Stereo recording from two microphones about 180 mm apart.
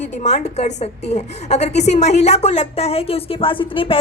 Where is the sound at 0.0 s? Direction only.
40° left (ahead or behind).